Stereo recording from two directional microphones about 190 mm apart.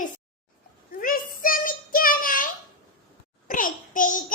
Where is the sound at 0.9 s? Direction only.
50° left (ahead or behind).